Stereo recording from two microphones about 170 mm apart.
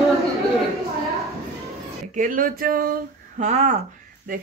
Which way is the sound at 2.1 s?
50° right (ahead or behind).